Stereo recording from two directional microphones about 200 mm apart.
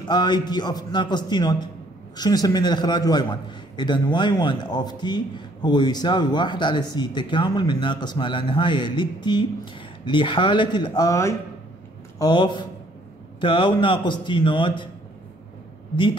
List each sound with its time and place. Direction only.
0.0 s a man's voice: 20° left (ahead or behind)